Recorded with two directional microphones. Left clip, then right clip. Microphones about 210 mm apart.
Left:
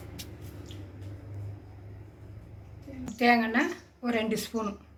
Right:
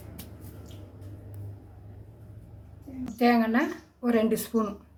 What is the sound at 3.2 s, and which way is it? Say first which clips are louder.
A woman's voice: even; 20° right (ahead or behind).